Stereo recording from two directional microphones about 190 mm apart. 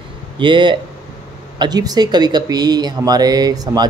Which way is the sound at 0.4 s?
25° right (ahead or behind).